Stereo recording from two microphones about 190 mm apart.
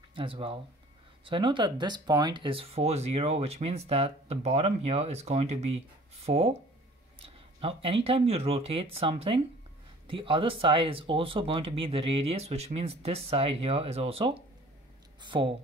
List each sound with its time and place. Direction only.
0.1 s speech: 30° right (ahead or behind)